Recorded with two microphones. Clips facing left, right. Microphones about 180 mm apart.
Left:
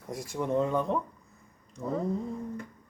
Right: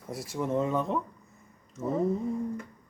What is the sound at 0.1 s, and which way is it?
Speech, 5° right (ahead or behind).